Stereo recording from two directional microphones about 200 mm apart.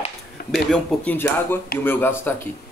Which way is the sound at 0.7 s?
10° left (ahead or behind).